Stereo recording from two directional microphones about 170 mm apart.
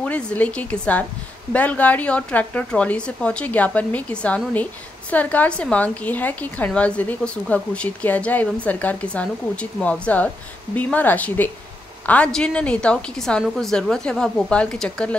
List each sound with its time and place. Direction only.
0.0 s a woman's voice: 5° left (ahead or behind)